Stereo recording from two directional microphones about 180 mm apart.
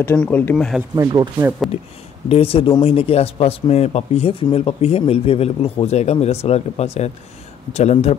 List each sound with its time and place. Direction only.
0.0 s speech: 10° left (ahead or behind)
0.9 s speech: 20° right (ahead or behind)
2.2 s a man's voice: 30° left (ahead or behind)